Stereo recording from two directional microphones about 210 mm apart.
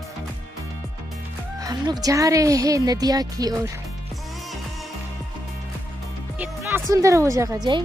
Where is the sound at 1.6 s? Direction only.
15° right (ahead or behind).